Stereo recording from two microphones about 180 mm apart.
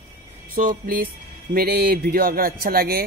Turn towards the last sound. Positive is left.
turn(degrees=-55)  # may be behind; listen again after turning